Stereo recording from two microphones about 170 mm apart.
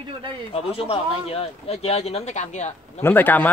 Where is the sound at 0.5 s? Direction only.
35° left (ahead or behind).